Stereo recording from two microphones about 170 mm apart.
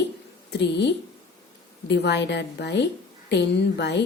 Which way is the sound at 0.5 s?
90° left.